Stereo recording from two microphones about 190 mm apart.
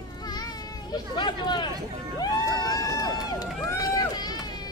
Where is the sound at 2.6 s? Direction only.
20° left (ahead or behind).